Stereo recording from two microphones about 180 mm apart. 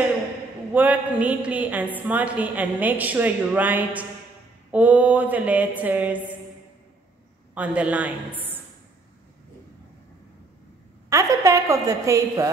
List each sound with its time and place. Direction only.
0.7 s a woman's voice: 10° right (ahead or behind)
7.5 s a woman's voice: 5° right (ahead or behind)
11.1 s a woman's voice: 15° right (ahead or behind)